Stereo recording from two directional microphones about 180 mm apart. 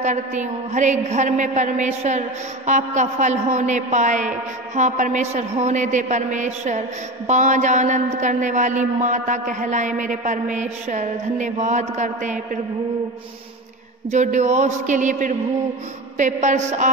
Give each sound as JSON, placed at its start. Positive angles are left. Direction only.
{"t": 0.0, "sound": "a woman's voice", "side_deg": -40}
{"t": 14.1, "sound": "a man's voice", "side_deg": -40}